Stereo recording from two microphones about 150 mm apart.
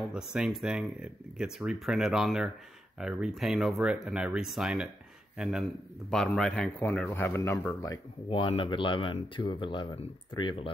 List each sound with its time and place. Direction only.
0.1 s a man's voice: 5° right (ahead or behind); by 8.0 s 25° left (ahead or behind)
8.3 s speech: 35° left (ahead or behind)